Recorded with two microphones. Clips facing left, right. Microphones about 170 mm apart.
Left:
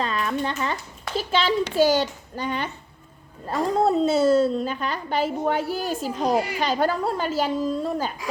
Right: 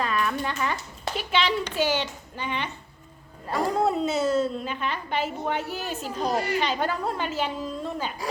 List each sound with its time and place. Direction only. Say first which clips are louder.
0.0 s a sound: left 1 dB; 25° left (ahead or behind)
1.1 s a woman's voice: left 3 dB; 35° left (ahead or behind)
6.3 s a woman's voice: left 1 dB; 10° left (ahead or behind)
6.6 s a woman's voice: left 4 dB; 40° left (ahead or behind)